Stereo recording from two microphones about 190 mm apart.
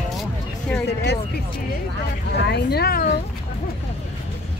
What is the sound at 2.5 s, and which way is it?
Speech, 60° left (ahead or behind).